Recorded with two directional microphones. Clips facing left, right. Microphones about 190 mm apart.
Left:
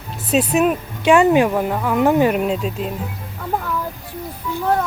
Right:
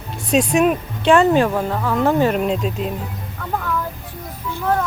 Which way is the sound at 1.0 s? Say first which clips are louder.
Left 1 dB; 10° left (ahead or behind).